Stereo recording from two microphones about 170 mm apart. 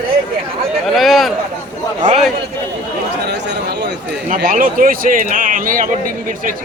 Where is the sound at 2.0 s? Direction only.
45° right (ahead or behind).